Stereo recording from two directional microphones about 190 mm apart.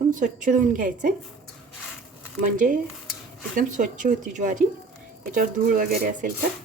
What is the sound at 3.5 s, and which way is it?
A woman's voice, 45° right (ahead or behind).